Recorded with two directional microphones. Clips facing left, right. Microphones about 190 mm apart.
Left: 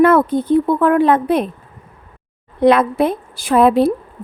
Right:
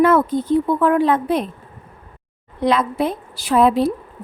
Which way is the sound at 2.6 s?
60° left (ahead or behind).